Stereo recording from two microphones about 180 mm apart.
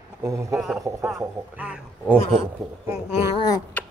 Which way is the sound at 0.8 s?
15° right (ahead or behind).